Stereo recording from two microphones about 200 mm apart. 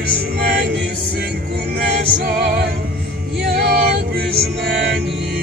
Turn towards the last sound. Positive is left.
turn(degrees=-55)  # may be behind; listen again after turning